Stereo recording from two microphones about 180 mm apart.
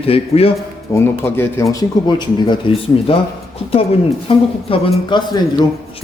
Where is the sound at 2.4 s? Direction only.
30° left (ahead or behind).